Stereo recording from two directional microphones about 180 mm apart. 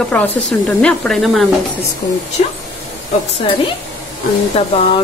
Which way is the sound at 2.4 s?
40° left (ahead or behind).